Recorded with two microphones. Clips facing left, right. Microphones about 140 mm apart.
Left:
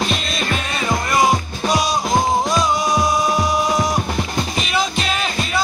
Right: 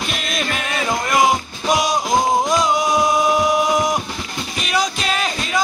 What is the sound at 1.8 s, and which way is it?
Music, 15° right (ahead or behind).